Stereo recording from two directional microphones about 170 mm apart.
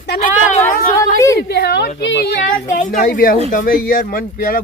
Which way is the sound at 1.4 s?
70° left (ahead or behind).